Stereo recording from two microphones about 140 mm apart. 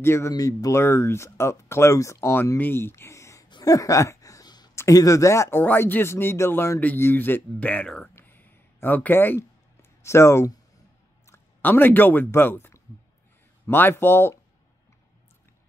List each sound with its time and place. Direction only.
0.0 s speech: 20° left (ahead or behind)